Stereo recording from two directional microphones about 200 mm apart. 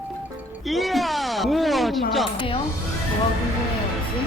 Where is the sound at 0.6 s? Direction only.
Centre (ahead or behind).